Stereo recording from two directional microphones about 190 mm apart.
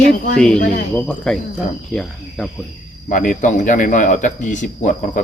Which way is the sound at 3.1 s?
45° left (ahead or behind).